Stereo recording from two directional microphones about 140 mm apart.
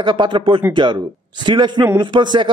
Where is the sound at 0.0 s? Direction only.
35° right (ahead or behind).